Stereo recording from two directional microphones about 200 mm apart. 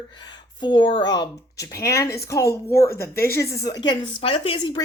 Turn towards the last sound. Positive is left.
turn(degrees=25)  # may be behind; listen again after turning